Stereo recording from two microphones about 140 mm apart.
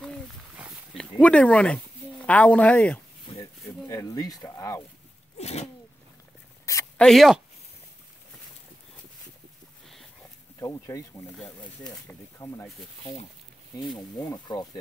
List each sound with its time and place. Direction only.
1.2 s speech: 10° left (ahead or behind)
3.9 s speech: 25° left (ahead or behind)
5.4 s speech: 50° left (ahead or behind)
6.6 s a sound: 20° left (ahead or behind)
7.0 s speech: centre (ahead or behind)
10.6 s speech: 25° left (ahead or behind)
11.8 s speech: 15° left (ahead or behind)
14.3 s speech: 30° left (ahead or behind)